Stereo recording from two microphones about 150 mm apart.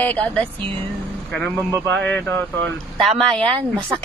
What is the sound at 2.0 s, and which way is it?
Speech, 10° left (ahead or behind).